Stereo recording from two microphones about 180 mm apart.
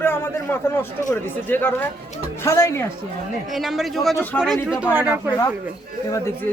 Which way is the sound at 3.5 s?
Centre (ahead or behind).